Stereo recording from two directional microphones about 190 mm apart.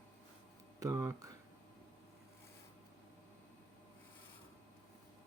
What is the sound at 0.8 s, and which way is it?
Speech, 15° right (ahead or behind).